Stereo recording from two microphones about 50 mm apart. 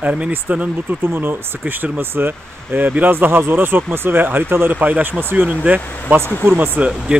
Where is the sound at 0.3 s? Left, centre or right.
Right.